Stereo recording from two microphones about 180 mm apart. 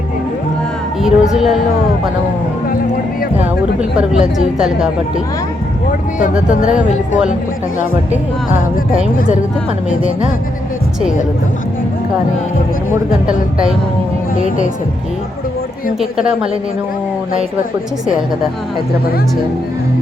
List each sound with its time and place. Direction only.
1.0 s speech: 5° right (ahead or behind)
3.8 s a woman's voice: 5° right (ahead or behind)
6.5 s speech: 45° left (ahead or behind)
9.1 s speech: 50° left (ahead or behind)
13.2 s a woman's voice: 5° right (ahead or behind)
16.0 s a woman's voice: 5° right (ahead or behind)